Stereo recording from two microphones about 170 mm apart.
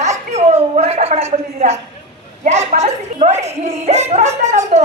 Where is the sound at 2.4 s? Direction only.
40° right (ahead or behind).